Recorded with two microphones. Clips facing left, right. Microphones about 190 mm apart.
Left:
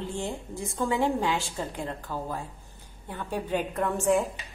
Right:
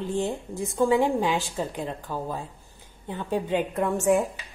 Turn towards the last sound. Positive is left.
turn(degrees=-15)  # may be behind; listen again after turning